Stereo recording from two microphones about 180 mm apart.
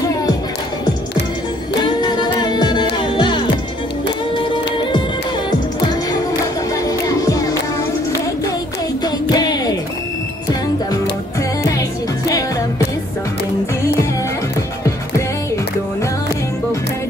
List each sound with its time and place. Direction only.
1.8 s music: 25° left (ahead or behind)
7.1 s music: 20° left (ahead or behind)
9.0 s music: 20° left (ahead or behind)
12.3 s music: 20° left (ahead or behind)